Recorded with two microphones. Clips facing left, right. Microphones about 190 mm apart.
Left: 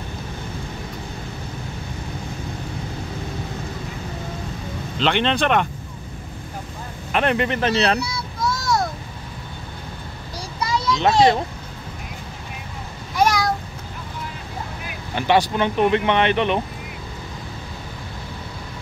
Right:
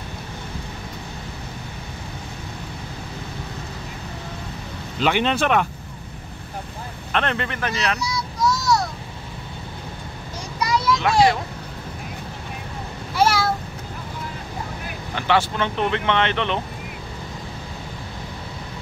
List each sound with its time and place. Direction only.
5.0 s speech: 5° right (ahead or behind)
7.1 s speech: 10° left (ahead or behind); by 8.0 s 30° left (ahead or behind)
8.4 s child singing: 55° left (ahead or behind)
10.6 s children playing: 25° left (ahead or behind)
13.1 s a sound: 15° left (ahead or behind)
15.1 s speech: 15° left (ahead or behind)